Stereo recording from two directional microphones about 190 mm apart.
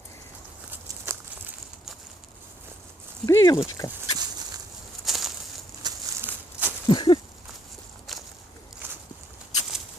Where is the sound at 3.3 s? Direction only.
15° left (ahead or behind).